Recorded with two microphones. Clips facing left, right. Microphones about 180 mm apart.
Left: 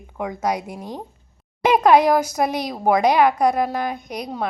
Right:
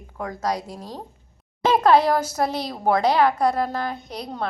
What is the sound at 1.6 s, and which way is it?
A woman's voice, 15° left (ahead or behind).